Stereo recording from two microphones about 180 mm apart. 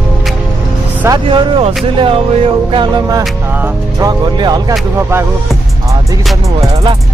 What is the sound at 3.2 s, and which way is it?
Music, 10° right (ahead or behind).